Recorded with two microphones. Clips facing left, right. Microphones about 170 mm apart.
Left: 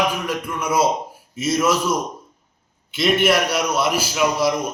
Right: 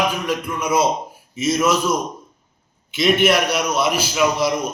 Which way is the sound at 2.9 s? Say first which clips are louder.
Right 1 dB; centre (ahead or behind).